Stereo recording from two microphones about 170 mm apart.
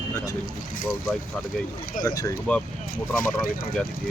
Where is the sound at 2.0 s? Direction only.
50° left (ahead or behind).